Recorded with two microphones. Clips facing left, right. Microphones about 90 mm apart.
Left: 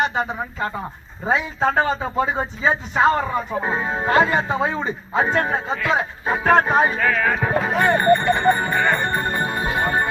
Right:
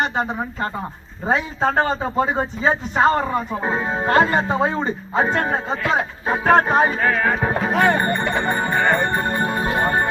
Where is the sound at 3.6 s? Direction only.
30° right (ahead or behind).